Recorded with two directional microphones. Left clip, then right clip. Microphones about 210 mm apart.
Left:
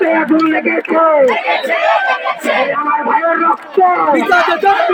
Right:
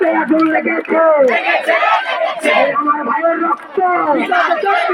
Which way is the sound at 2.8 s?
50° left (ahead or behind).